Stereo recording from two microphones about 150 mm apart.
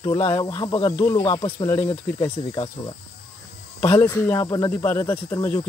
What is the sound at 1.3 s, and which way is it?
Speech, 30° left (ahead or behind).